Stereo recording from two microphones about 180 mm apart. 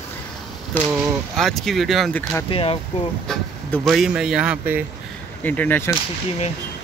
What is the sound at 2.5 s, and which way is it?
Speech, 35° left (ahead or behind).